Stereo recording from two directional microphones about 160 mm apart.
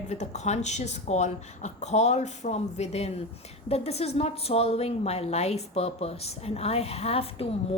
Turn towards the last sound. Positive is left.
turn(degrees=40)  # may be behind; listen again after turning